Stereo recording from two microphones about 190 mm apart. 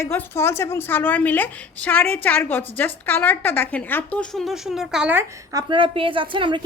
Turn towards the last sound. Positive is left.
turn(degrees=-25)  # may be behind; listen again after turning